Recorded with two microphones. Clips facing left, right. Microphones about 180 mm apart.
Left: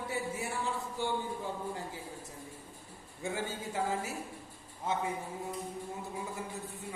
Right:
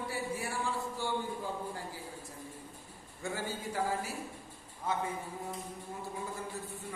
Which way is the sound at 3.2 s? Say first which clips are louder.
Left 1 dB; 20° left (ahead or behind).